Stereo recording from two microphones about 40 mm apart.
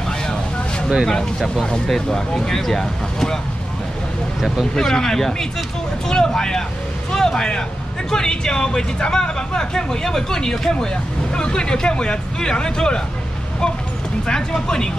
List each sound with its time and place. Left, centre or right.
1.9 s speech: centre
4.7 s speech: centre
14.2 s speech: centre